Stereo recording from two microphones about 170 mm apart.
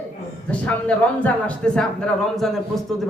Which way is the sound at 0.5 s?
5° left (ahead or behind).